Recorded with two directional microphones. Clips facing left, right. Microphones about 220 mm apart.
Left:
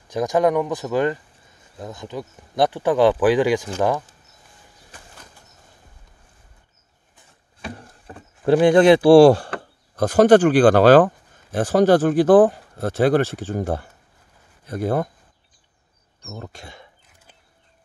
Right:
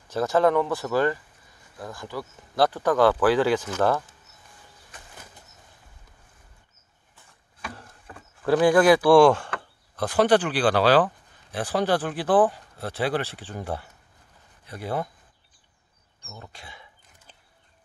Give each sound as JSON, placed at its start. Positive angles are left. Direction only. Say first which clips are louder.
{"t": 0.1, "sound": "speech", "louder": "left 2 dB", "side_deg": 15}
{"t": 8.4, "sound": "speech", "louder": "left 4 dB", "side_deg": 25}
{"t": 16.3, "sound": "speech", "louder": "left 8 dB", "side_deg": 45}